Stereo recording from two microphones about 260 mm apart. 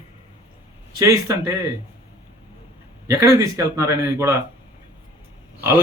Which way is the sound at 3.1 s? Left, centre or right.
Centre.